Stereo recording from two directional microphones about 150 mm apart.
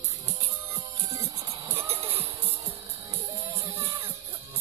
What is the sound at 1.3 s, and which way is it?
Music, 40° right (ahead or behind).